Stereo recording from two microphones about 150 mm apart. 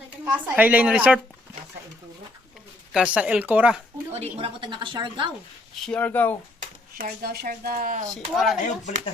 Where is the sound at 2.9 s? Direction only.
5° right (ahead or behind).